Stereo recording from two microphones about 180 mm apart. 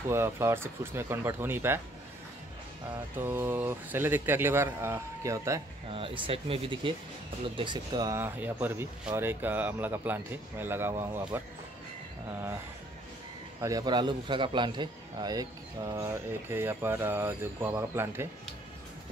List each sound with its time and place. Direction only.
0.1 s a man's voice: 15° right (ahead or behind)
3.2 s a man's voice: 10° right (ahead or behind)
5.9 s a man's voice: 30° right (ahead or behind); by 11.4 s 15° right (ahead or behind)
13.6 s a man's voice: 20° right (ahead or behind)